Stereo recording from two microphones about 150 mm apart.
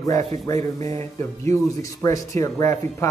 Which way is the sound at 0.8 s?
45° right (ahead or behind).